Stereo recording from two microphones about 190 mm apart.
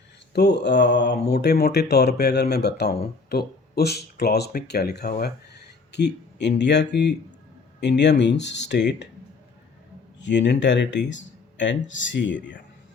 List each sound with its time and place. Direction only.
0.3 s speech: 60° left (ahead or behind)
5.2 s a sound: 60° left (ahead or behind)
6.6 s speech: 65° left (ahead or behind)
10.2 s speech: 65° left (ahead or behind)